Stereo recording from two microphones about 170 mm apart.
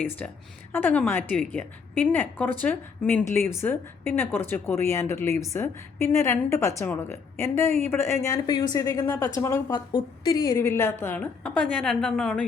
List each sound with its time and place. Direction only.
0.2 s a woman's voice: 5° left (ahead or behind)